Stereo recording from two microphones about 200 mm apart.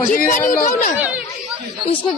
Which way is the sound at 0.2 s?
40° left (ahead or behind).